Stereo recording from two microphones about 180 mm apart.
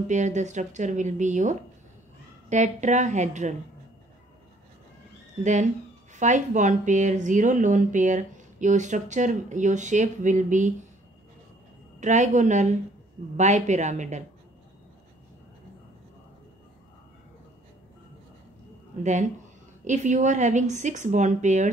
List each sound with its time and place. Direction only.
0.1 s a woman's voice: 40° right (ahead or behind)
5.4 s speech: 40° right (ahead or behind)
12.0 s a woman's voice: 40° right (ahead or behind)
19.8 s speech: 45° right (ahead or behind)